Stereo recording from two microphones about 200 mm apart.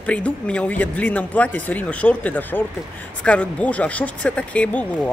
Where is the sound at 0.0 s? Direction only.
5° left (ahead or behind).